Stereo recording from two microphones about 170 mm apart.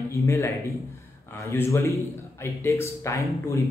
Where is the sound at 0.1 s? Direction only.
15° left (ahead or behind).